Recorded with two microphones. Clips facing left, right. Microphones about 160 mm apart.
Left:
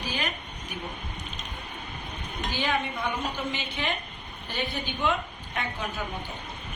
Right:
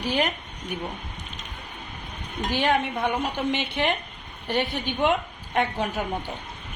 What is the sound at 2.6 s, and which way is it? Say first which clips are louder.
A woman's voice: right 6 dB; 70° right (ahead or behind).